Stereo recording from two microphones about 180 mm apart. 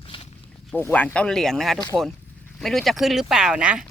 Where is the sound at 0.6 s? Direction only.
10° left (ahead or behind).